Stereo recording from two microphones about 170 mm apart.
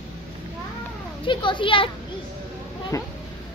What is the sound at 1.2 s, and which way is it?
Speech, 30° left (ahead or behind).